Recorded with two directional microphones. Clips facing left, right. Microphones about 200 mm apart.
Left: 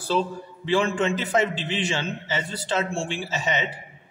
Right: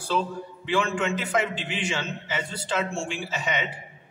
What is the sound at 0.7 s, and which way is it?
A man's voice, 35° left (ahead or behind).